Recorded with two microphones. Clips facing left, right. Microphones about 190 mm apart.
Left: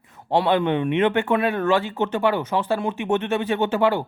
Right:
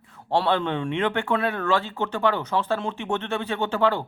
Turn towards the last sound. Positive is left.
turn(degrees=15)  # may be behind; listen again after turning